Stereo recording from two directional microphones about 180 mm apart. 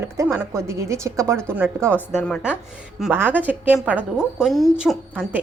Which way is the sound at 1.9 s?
5° left (ahead or behind).